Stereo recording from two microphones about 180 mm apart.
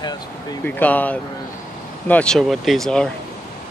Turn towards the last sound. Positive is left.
turn(degrees=5)  # may be behind; listen again after turning